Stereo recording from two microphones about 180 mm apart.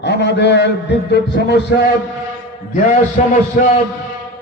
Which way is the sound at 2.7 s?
45° left (ahead or behind).